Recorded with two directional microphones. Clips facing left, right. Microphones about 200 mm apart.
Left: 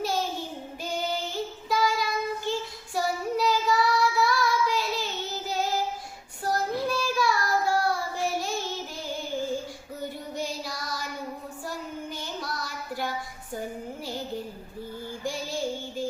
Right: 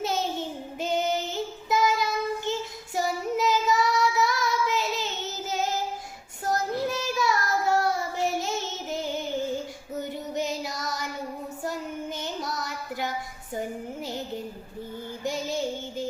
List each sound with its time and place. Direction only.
0.0 s child singing: 20° right (ahead or behind)
10.3 s child singing: 20° right (ahead or behind)
14.0 s music: 20° right (ahead or behind)
15.2 s child singing: 20° right (ahead or behind)